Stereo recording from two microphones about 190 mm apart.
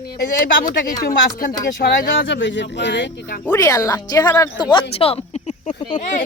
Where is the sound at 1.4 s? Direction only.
50° left (ahead or behind).